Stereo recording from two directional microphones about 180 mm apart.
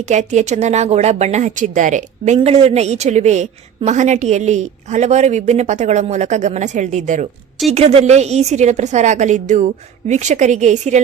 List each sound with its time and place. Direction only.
0.0 s speech: 40° right (ahead or behind)